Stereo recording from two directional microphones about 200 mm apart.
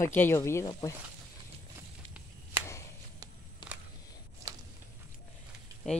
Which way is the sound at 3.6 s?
25° left (ahead or behind).